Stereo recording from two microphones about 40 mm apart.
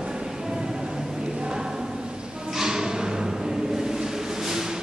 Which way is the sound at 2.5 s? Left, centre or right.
Centre.